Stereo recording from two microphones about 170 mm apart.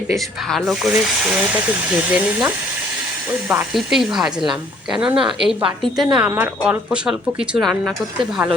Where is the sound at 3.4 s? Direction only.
10° right (ahead or behind).